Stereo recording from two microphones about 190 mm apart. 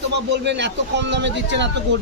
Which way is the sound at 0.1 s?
65° right (ahead or behind).